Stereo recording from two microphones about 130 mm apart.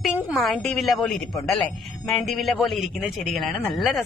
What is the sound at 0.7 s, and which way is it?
Speech, centre (ahead or behind).